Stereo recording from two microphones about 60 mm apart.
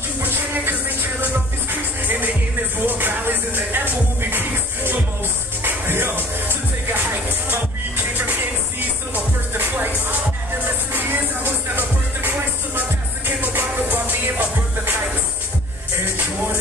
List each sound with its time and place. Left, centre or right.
0.2 s music: right
9.5 s music: right